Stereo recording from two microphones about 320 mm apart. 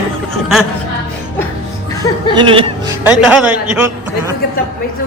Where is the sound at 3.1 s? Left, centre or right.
Centre.